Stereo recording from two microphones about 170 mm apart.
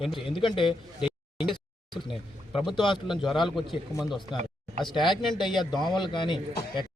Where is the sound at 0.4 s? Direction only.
30° left (ahead or behind).